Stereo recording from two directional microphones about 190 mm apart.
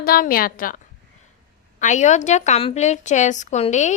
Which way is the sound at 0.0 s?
50° left (ahead or behind).